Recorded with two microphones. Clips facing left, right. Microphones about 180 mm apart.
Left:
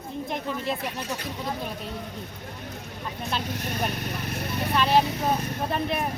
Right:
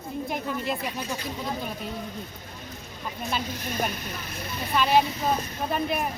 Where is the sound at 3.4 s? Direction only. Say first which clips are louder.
Even; 65° left (ahead or behind).